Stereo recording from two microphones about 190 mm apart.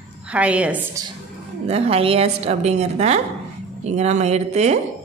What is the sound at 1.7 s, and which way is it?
A woman's voice, 30° right (ahead or behind).